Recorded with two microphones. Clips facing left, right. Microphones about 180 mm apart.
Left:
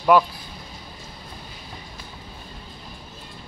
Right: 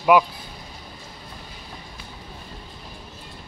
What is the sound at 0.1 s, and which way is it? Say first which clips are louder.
Speech: even; 15° right (ahead or behind).